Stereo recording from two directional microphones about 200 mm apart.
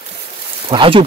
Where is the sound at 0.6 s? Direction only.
25° right (ahead or behind).